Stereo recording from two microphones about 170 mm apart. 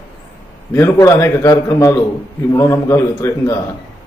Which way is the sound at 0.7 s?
15° left (ahead or behind).